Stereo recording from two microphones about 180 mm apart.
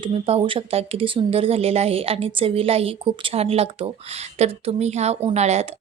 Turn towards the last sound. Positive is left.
turn(degrees=-35)  # may be behind; listen again after turning